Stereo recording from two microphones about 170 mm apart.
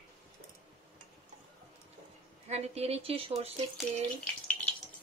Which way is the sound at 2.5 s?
35° right (ahead or behind).